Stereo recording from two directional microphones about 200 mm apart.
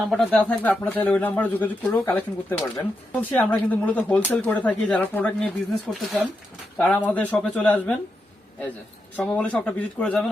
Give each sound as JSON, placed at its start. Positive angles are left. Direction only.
{"t": 0.1, "sound": "speech", "side_deg": 0}
{"t": 9.1, "sound": "speech", "side_deg": 5}